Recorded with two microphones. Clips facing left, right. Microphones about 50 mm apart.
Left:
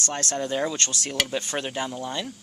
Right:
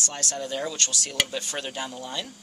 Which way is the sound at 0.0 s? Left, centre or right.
Left.